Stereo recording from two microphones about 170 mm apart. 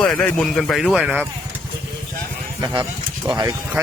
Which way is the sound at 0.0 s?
5° left (ahead or behind).